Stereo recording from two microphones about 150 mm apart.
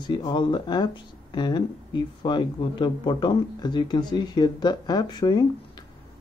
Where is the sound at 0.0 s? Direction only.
30° left (ahead or behind).